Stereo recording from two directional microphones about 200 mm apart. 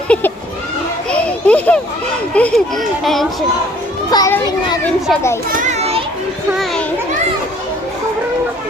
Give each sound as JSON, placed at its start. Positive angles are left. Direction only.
{"t": 0.1, "sound": "a child's voice", "side_deg": 5}
{"t": 1.1, "sound": "children playing", "side_deg": 5}
{"t": 2.3, "sound": "a child's voice", "side_deg": 5}
{"t": 4.1, "sound": "a child's voice", "side_deg": 15}
{"t": 5.5, "sound": "children playing", "side_deg": -35}
{"t": 6.5, "sound": "children playing", "side_deg": 0}